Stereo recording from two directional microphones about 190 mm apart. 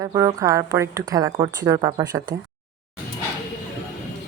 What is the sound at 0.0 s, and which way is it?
A woman's voice, 20° right (ahead or behind).